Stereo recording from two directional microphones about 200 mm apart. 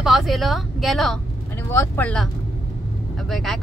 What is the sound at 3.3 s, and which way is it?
Speech, centre (ahead or behind).